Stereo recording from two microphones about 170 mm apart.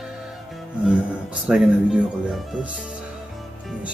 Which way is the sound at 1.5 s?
Centre (ahead or behind).